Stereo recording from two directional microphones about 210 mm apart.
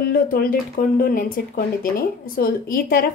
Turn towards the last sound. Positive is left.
turn(degrees=45)  # may be behind; listen again after turning